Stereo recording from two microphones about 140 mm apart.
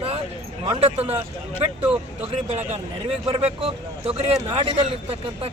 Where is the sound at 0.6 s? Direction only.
40° right (ahead or behind).